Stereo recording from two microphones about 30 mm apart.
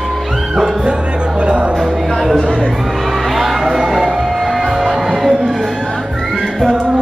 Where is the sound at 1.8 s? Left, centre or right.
Centre.